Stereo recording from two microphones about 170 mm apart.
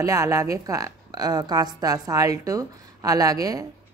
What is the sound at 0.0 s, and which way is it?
A woman's voice, 20° right (ahead or behind).